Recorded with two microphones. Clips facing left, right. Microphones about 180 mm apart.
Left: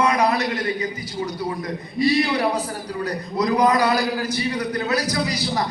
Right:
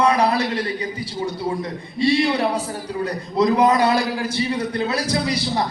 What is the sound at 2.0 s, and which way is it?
A man's voice, 25° right (ahead or behind).